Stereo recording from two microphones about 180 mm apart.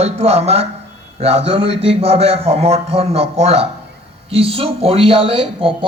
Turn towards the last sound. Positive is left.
turn(degrees=-30)  # may be behind; listen again after turning